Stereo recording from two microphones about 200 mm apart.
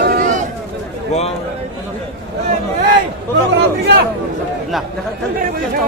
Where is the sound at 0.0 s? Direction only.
45° right (ahead or behind).